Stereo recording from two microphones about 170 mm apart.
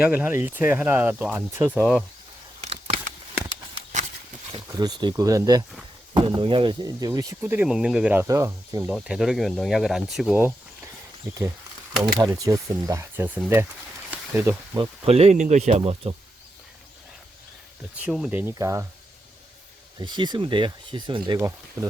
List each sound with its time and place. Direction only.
0.0 s speech: 10° right (ahead or behind)
2.6 s a sound: 40° right (ahead or behind)
4.5 s speech: 25° right (ahead or behind)
6.2 s speech: 30° right (ahead or behind)
8.9 s speech: 5° right (ahead or behind)
12.2 s speech: 20° right (ahead or behind)
14.1 s a sound: 10° right (ahead or behind)
14.8 s speech: 35° right (ahead or behind)
17.9 s speech: 5° right (ahead or behind)
20.0 s speech: 25° right (ahead or behind)